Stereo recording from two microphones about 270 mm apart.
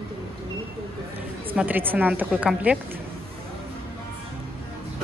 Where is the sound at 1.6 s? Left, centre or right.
Centre.